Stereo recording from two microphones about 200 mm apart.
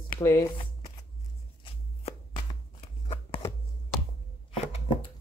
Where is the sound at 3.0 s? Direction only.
30° left (ahead or behind).